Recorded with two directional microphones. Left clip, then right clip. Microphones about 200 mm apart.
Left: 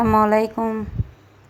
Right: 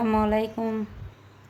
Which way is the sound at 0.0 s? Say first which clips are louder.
Left 8 dB; 15° left (ahead or behind).